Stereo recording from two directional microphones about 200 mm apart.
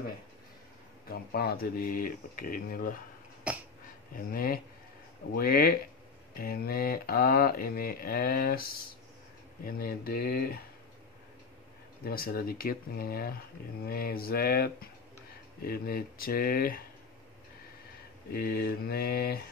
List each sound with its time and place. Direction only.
1.0 s speech: 50° left (ahead or behind)
3.5 s a sound: 5° right (ahead or behind)
4.1 s speech: 45° left (ahead or behind)
12.0 s speech: 50° left (ahead or behind)
18.3 s speech: 50° left (ahead or behind)